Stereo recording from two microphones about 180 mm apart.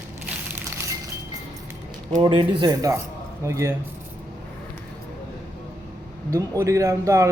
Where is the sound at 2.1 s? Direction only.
25° right (ahead or behind).